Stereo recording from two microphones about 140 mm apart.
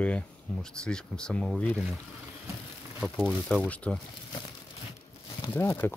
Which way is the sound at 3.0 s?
5° right (ahead or behind).